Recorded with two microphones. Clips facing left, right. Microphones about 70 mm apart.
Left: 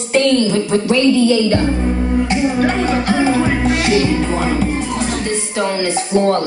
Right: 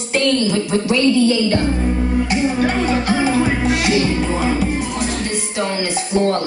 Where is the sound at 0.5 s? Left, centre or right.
Left.